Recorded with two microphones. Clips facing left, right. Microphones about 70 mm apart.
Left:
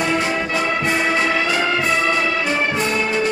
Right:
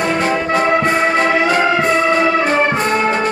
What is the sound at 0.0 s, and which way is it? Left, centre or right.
Music, right.